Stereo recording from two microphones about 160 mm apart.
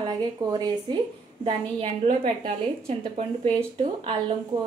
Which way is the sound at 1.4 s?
40° right (ahead or behind).